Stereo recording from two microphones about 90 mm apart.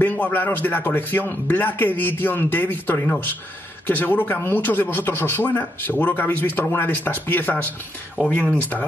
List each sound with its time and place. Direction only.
0.0 s speech: 20° left (ahead or behind)